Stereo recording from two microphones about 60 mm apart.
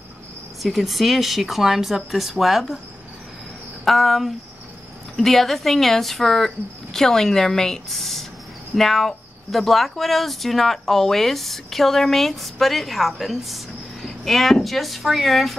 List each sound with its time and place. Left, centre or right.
0.6 s speech: centre
3.8 s speech: centre